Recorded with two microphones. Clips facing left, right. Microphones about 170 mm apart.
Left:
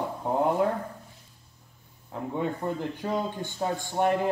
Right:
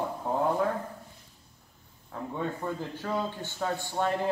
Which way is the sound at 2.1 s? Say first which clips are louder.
Left 3 dB; 15° left (ahead or behind).